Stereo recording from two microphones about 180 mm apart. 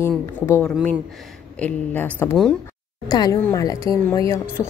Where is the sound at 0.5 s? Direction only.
15° left (ahead or behind).